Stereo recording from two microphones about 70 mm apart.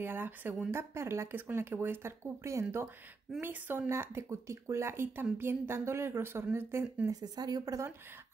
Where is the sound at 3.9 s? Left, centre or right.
Right.